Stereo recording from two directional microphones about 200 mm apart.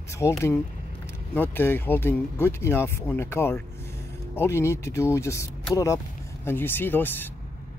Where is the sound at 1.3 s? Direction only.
10° left (ahead or behind).